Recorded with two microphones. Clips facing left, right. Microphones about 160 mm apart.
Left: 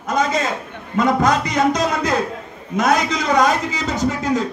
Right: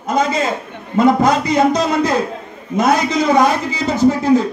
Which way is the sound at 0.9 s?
30° right (ahead or behind).